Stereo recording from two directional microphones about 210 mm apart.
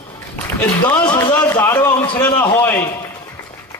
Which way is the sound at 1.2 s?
15° left (ahead or behind).